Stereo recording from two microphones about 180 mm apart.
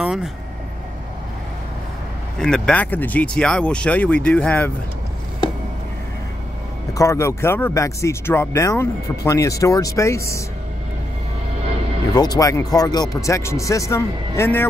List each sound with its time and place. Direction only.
0.0 s vehicle: 5° right (ahead or behind)
2.3 s speech: 5° left (ahead or behind)
6.9 s speech: 15° left (ahead or behind)
12.2 s speech: 20° left (ahead or behind)